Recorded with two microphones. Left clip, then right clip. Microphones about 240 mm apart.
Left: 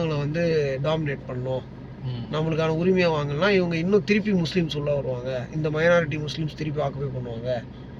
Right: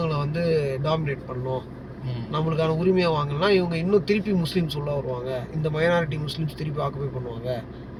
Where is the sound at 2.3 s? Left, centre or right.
Centre.